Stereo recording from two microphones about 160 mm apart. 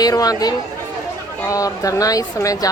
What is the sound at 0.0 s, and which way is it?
Speech, 25° left (ahead or behind).